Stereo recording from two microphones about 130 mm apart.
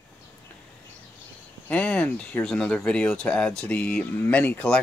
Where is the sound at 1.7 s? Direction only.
10° left (ahead or behind).